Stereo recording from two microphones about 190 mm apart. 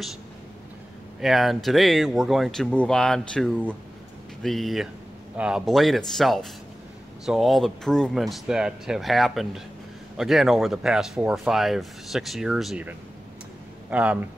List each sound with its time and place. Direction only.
1.2 s speech: centre (ahead or behind)